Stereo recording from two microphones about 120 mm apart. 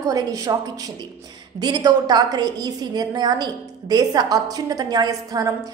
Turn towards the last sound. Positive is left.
turn(degrees=-30)  # may be behind; listen again after turning